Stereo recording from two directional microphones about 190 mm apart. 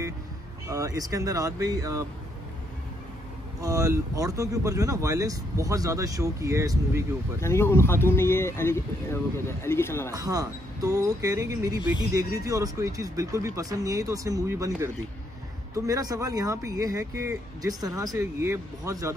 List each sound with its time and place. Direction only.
0.7 s speech: 20° right (ahead or behind)
3.6 s speech: 20° right (ahead or behind)
7.3 s speech: 15° left (ahead or behind)
10.1 s speech: 20° right (ahead or behind)